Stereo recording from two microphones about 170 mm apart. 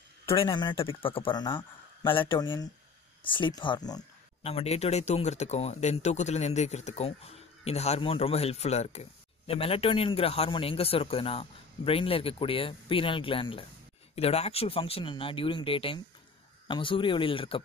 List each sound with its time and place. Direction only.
0.3 s speech: 30° left (ahead or behind)
4.4 s speech: 35° left (ahead or behind)